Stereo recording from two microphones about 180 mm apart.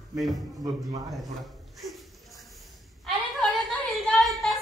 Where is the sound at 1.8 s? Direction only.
Centre (ahead or behind).